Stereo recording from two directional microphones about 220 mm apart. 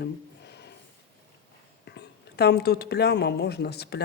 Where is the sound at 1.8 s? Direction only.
50° left (ahead or behind).